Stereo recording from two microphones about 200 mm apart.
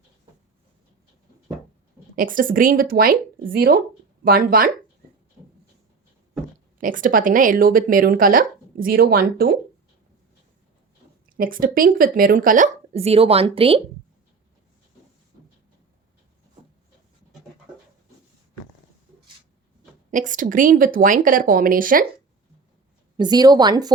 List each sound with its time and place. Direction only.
2.1 s speech: 45° right (ahead or behind)
6.7 s speech: 45° right (ahead or behind)
11.3 s speech: 45° right (ahead or behind); by 13.8 s 30° right (ahead or behind)
20.1 s speech: 40° right (ahead or behind)
23.1 s speech: 20° right (ahead or behind)